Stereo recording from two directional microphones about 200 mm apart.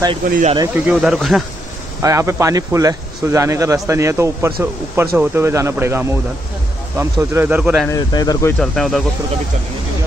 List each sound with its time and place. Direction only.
0.3 s speech: 40° right (ahead or behind)
0.7 s speech: 5° right (ahead or behind)
2.0 s speech: 15° right (ahead or behind)
7.9 s speech: 20° left (ahead or behind)
8.5 s speech: centre (ahead or behind)